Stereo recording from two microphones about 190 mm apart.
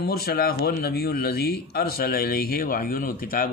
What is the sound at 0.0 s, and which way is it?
Speech, 55° left (ahead or behind).